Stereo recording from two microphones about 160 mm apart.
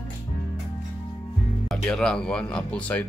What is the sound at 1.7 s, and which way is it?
Speech, 5° left (ahead or behind).